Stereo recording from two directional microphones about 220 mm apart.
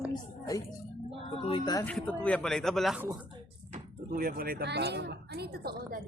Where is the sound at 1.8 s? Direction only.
5° left (ahead or behind).